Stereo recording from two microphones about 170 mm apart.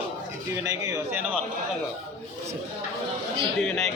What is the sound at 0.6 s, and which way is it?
Speech, 20° right (ahead or behind).